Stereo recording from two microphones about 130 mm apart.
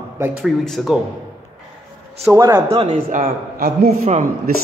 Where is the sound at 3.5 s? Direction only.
65° right (ahead or behind).